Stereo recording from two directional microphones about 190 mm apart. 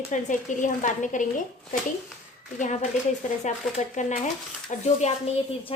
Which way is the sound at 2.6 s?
40° left (ahead or behind).